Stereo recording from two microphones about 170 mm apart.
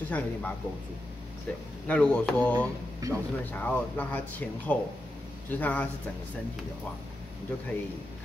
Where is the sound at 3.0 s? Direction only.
20° right (ahead or behind).